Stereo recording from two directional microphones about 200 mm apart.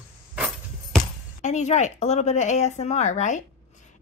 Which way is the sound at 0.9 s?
Centre (ahead or behind).